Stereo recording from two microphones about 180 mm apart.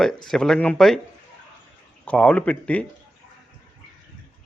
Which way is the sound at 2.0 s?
5° left (ahead or behind).